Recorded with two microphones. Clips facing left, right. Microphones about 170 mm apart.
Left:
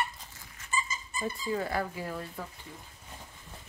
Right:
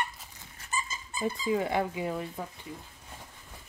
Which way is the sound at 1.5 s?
20° right (ahead or behind).